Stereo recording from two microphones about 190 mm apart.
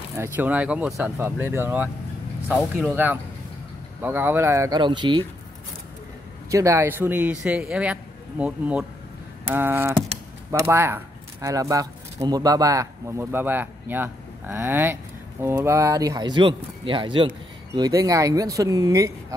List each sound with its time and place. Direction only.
0.1 s speech: 10° right (ahead or behind)
4.0 s speech: 10° right (ahead or behind)
6.5 s speech: 15° right (ahead or behind)